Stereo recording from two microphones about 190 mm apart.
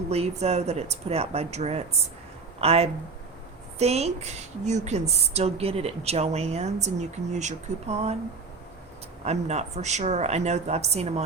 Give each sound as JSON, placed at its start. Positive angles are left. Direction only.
{"t": 0.1, "sound": "a woman's voice", "side_deg": -35}
{"t": 9.2, "sound": "a woman's voice", "side_deg": -35}